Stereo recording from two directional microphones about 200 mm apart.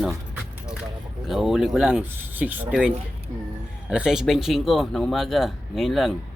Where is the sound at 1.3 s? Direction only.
Centre (ahead or behind).